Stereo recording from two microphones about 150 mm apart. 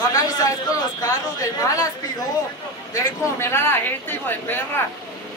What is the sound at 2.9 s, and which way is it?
Speech, 20° left (ahead or behind).